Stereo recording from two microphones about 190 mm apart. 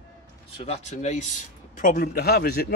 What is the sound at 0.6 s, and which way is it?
A man's voice, 35° left (ahead or behind).